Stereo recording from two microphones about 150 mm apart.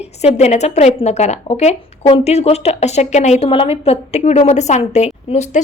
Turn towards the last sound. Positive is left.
turn(degrees=50)  # may be behind; listen again after turning